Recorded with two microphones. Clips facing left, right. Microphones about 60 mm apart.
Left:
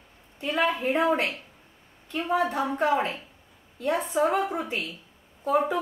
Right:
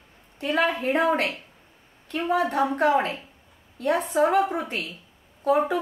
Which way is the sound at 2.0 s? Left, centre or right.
Right.